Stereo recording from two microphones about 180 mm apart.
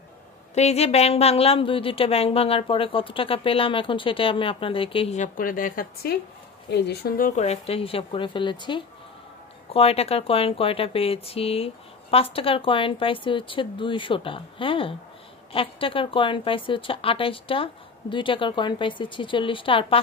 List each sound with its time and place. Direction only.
0.6 s a woman's voice: 35° left (ahead or behind); by 6.1 s 50° left (ahead or behind)
6.7 s a woman's voice: 65° left (ahead or behind); by 20.0 s 30° left (ahead or behind)